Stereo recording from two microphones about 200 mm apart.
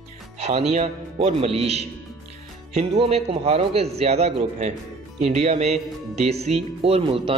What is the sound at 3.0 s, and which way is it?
A man's voice, 30° right (ahead or behind).